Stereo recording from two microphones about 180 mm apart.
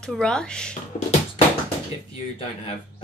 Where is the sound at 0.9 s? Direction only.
35° left (ahead or behind).